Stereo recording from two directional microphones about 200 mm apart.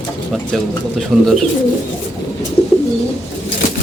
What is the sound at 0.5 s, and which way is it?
Speech, centre (ahead or behind).